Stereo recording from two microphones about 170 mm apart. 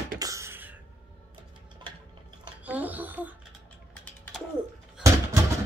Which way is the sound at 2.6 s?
10° right (ahead or behind).